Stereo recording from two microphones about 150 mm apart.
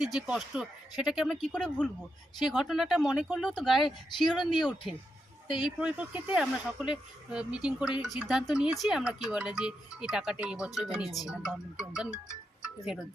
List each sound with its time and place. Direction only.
0.0 s speech: 5° right (ahead or behind)
5.5 s speech: 30° left (ahead or behind)
5.8 s speech: 10° right (ahead or behind)